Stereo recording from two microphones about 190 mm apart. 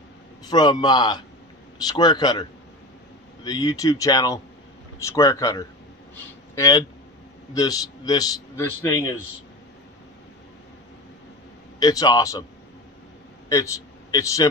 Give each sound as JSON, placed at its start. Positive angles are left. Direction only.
{"t": 0.5, "sound": "a man's voice", "side_deg": 25}
{"t": 3.4, "sound": "a man's voice", "side_deg": 20}
{"t": 11.8, "sound": "a man's voice", "side_deg": 20}
{"t": 14.1, "sound": "a man's voice", "side_deg": 20}